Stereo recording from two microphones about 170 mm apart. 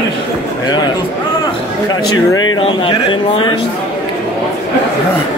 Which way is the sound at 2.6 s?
30° left (ahead or behind).